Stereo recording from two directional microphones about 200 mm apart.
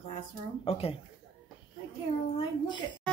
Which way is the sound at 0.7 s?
30° left (ahead or behind).